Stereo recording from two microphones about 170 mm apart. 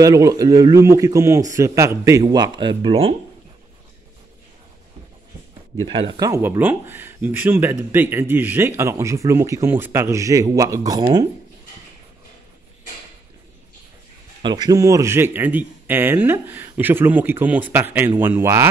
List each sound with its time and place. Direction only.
0.0 s speech: 20° right (ahead or behind)
5.9 s speech: 30° right (ahead or behind)
14.4 s speech: 25° right (ahead or behind)